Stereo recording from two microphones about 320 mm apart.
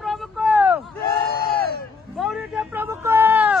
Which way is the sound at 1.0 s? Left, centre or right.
Left.